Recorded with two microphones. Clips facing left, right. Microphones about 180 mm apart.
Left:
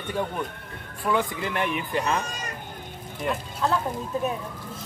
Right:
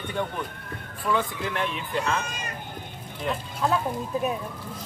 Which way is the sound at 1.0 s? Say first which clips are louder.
Left 1 dB; 15° left (ahead or behind).